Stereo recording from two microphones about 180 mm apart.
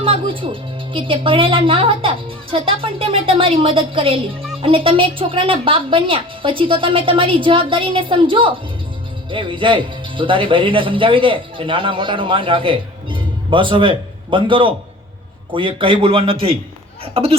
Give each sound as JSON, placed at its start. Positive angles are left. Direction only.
{"t": 0.0, "sound": "a man's voice", "side_deg": -30}